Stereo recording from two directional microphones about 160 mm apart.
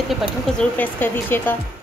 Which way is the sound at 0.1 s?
Centre (ahead or behind).